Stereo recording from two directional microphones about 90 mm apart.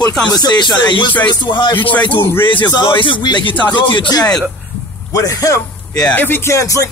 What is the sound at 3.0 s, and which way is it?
A man's voice, 65° left (ahead or behind).